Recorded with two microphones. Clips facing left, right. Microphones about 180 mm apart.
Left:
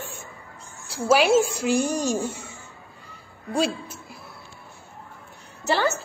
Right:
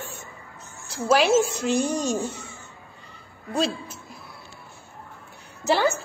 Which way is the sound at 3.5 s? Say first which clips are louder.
Left 1 dB; 10° left (ahead or behind).